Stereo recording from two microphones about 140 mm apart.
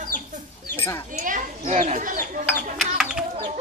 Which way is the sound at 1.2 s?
65° right (ahead or behind).